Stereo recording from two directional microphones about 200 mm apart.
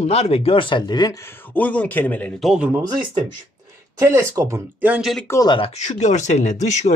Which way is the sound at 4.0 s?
15° right (ahead or behind).